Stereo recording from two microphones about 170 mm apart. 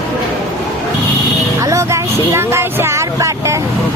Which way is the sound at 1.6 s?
20° right (ahead or behind).